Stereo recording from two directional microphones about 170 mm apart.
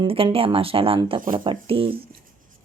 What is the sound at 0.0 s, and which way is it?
Speech, 30° right (ahead or behind).